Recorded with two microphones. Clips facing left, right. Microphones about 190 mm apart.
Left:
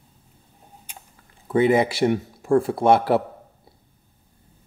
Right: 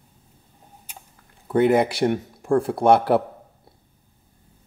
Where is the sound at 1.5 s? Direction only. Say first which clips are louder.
Even; centre (ahead or behind).